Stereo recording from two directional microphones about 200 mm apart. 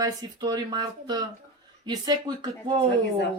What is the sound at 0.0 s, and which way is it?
A woman's voice, 20° right (ahead or behind).